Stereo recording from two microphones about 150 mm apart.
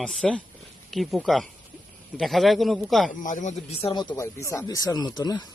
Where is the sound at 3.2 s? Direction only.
55° left (ahead or behind); by 4.0 s 40° left (ahead or behind).